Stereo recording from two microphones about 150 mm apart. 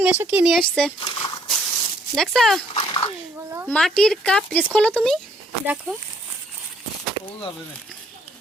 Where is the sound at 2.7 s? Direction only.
35° left (ahead or behind).